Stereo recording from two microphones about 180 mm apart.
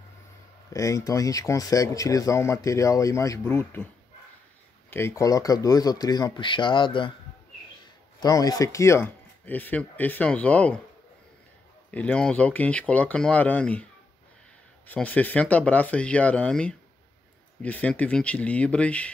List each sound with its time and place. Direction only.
0.7 s a man's voice: 20° left (ahead or behind)
4.9 s speech: 15° left (ahead or behind)
8.2 s a man's voice: 20° left (ahead or behind)
11.9 s a man's voice: 5° left (ahead or behind)
14.9 s a man's voice: 10° left (ahead or behind)